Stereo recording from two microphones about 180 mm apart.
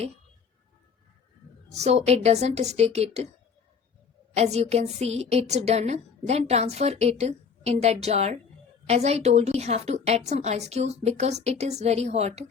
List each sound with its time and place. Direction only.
1.7 s a woman's voice: 35° right (ahead or behind)
4.4 s a woman's voice: 35° right (ahead or behind)